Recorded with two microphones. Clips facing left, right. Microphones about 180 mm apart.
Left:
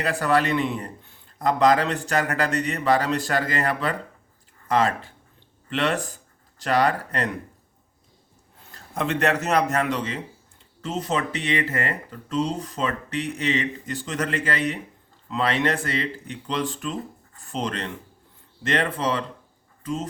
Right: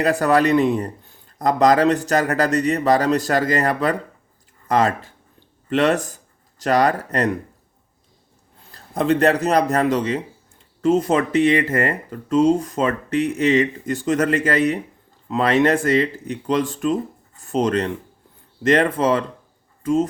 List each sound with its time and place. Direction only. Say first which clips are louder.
0.0 s a man's voice: right 5 dB; 40° right (ahead or behind)
8.7 s a man's voice: right 7 dB; 35° right (ahead or behind)